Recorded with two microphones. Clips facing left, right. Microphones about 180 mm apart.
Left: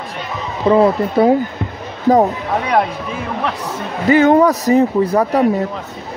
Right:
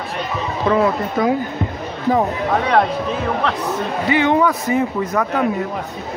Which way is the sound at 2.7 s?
10° left (ahead or behind).